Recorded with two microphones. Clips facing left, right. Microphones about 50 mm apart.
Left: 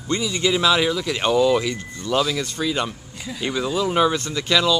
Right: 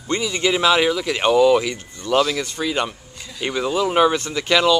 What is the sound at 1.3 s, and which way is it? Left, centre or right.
Speech, centre.